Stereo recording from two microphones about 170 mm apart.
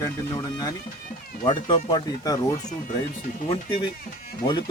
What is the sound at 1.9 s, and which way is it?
Speech, 20° left (ahead or behind).